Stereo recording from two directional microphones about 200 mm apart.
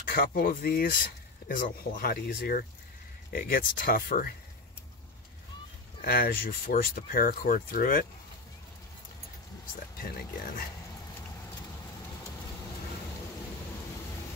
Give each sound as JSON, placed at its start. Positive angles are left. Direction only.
{"t": 0.0, "sound": "speech", "side_deg": 45}
{"t": 5.9, "sound": "speech", "side_deg": 50}
{"t": 10.0, "sound": "speech", "side_deg": 50}